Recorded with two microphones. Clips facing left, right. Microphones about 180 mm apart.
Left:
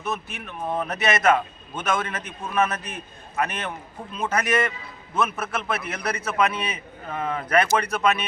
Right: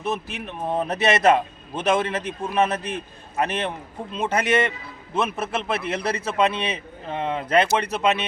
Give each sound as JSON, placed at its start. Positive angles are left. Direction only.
{"t": 0.0, "sound": "a man's voice", "side_deg": -30}